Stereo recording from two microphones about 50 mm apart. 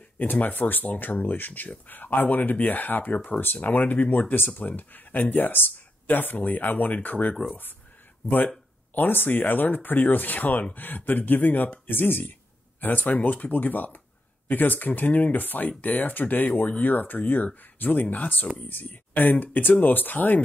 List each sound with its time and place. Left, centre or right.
0.2 s speech: left
8.9 s speech: left